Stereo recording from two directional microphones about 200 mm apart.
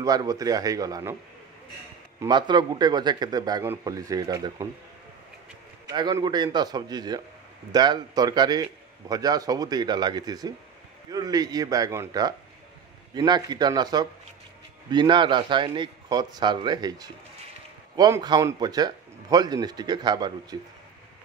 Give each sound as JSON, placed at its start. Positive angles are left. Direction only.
{"t": 0.0, "sound": "a man's voice", "side_deg": -20}
{"t": 2.1, "sound": "a man's voice", "side_deg": -20}
{"t": 5.9, "sound": "a man's voice", "side_deg": -20}